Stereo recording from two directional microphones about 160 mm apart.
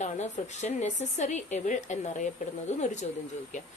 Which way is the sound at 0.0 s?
45° left (ahead or behind).